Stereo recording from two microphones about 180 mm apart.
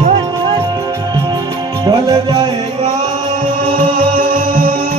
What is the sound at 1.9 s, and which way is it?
Music, 20° right (ahead or behind).